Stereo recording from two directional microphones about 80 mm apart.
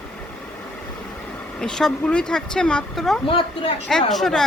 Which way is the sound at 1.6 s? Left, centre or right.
Centre.